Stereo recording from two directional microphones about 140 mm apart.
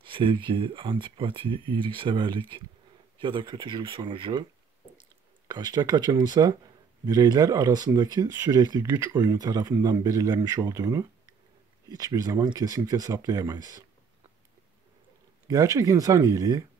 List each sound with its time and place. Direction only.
0.0 s speech: 35° right (ahead or behind)
5.5 s speech: 30° right (ahead or behind)
15.4 s speech: 25° right (ahead or behind)